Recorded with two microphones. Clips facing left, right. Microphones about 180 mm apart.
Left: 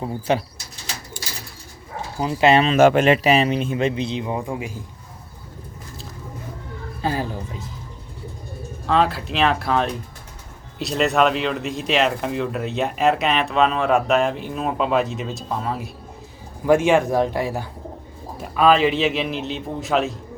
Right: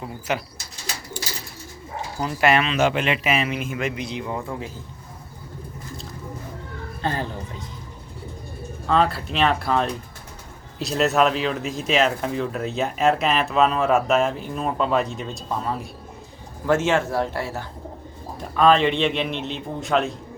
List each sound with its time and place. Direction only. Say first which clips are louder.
0.0 s speech: left 5 dB; 30° left (ahead or behind)
2.1 s a man's voice: left 4 dB; 20° left (ahead or behind)
2.6 s a man's voice: left 7 dB; 50° left (ahead or behind); by 4.8 s 15° left (ahead or behind)
7.0 s speech: left 2 dB; 5° left (ahead or behind)
8.9 s speech: left 1 dB; centre (ahead or behind)
16.6 s speech: left 4 dB; 15° left (ahead or behind)